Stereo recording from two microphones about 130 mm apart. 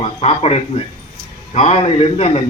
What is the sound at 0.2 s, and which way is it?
Speech, 55° left (ahead or behind).